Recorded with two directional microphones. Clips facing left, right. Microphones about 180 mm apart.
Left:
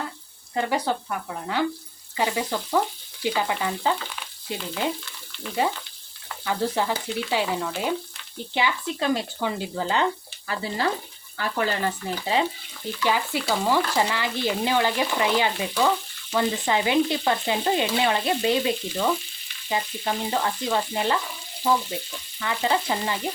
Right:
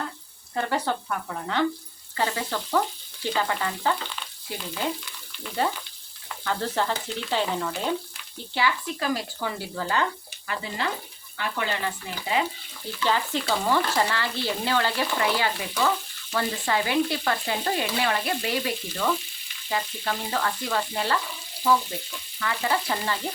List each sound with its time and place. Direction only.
0.5 s speech: 15° left (ahead or behind)
6.4 s speech: 10° left (ahead or behind)
8.5 s stir: 20° left (ahead or behind)
10.4 s speech: 35° left (ahead or behind)
13.1 s speech: 10° left (ahead or behind)
16.3 s stir: 20° left (ahead or behind)
22.4 s stir: 20° left (ahead or behind)